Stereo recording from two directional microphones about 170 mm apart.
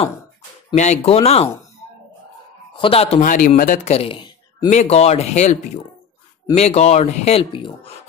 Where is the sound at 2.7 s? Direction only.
35° left (ahead or behind).